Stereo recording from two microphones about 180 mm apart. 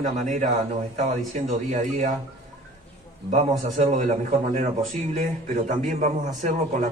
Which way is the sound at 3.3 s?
40° right (ahead or behind).